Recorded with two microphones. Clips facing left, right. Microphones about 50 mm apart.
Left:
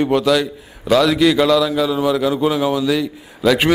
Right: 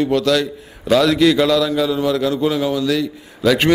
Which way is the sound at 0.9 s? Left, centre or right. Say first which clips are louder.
Even; centre.